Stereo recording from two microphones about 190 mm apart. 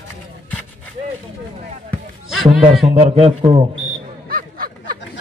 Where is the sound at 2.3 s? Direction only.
Centre (ahead or behind).